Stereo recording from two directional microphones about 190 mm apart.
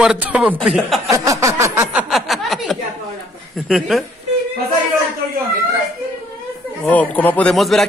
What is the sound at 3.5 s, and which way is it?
Speech, centre (ahead or behind).